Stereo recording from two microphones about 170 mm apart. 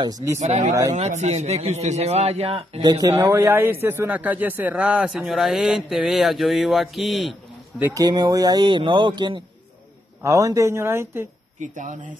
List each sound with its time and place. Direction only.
0.0 s speech: 20° right (ahead or behind)
0.4 s a man's voice: 40° right (ahead or behind)
2.8 s a man's voice: 20° right (ahead or behind); by 7.3 s centre (ahead or behind)
7.8 s speech: 20° right (ahead or behind)
11.6 s speech: 50° right (ahead or behind)